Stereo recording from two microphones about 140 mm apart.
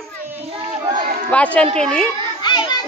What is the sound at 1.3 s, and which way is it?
Speech, 10° left (ahead or behind).